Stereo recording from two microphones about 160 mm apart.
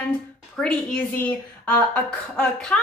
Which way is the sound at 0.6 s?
5° left (ahead or behind).